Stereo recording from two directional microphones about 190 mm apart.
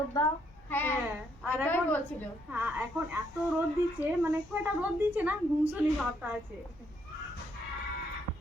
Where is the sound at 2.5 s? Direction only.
10° right (ahead or behind).